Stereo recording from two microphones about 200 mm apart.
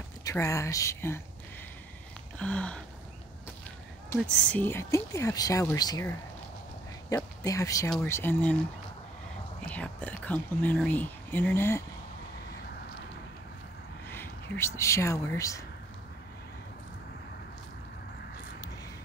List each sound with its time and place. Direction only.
0.2 s speech: 15° left (ahead or behind)
2.3 s a sound: 5° left (ahead or behind)
4.1 s speech: 5° left (ahead or behind)
9.6 s speech: 5° left (ahead or behind)
14.0 s a sound: 10° left (ahead or behind)
14.8 s speech: 15° left (ahead or behind)